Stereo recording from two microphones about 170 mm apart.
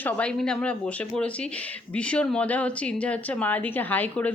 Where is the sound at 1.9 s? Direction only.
5° left (ahead or behind).